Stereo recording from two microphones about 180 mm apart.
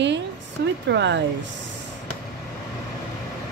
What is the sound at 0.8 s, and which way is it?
Speech, 80° right.